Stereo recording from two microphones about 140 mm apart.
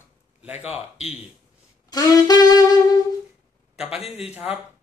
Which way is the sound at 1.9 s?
25° left (ahead or behind).